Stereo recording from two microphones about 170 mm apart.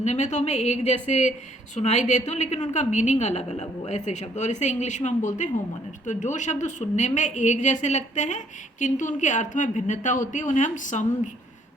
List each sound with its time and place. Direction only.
0.0 s a woman's voice: 45° left (ahead or behind)